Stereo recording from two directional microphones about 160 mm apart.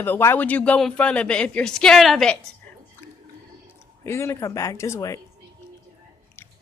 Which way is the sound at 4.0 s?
15° left (ahead or behind).